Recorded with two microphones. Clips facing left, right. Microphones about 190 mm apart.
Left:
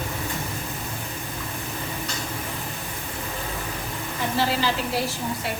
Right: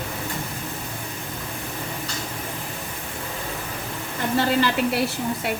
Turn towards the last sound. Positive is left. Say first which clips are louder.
# right 4 dB
turn(degrees=-60)  # may be behind; listen again after turning